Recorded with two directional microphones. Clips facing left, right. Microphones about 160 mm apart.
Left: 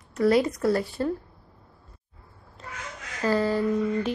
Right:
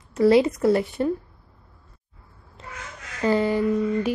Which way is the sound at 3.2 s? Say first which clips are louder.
Right 3 dB; 20° right (ahead or behind).